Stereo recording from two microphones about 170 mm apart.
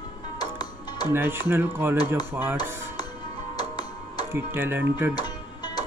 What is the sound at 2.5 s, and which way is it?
Music, 25° left (ahead or behind).